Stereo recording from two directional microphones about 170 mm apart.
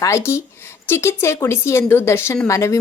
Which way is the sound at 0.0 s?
15° left (ahead or behind).